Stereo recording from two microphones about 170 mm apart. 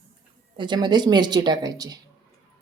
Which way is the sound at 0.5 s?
25° right (ahead or behind).